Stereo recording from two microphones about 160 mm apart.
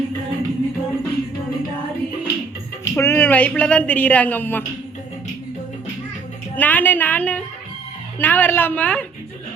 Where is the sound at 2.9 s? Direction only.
15° left (ahead or behind).